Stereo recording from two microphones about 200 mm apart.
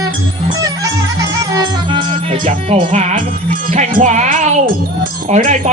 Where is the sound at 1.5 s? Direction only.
20° right (ahead or behind).